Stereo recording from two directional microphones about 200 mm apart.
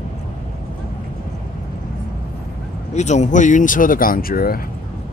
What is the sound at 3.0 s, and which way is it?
Speech, 35° left (ahead or behind).